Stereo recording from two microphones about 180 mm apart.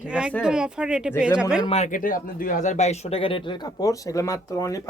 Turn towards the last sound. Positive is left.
turn(degrees=20)  # may be behind; listen again after turning